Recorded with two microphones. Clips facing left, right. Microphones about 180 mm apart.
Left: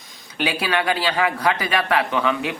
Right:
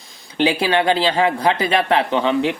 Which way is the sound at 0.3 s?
25° right (ahead or behind).